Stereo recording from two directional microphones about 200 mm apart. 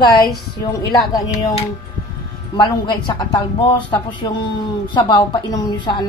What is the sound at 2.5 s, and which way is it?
Speech, 20° left (ahead or behind).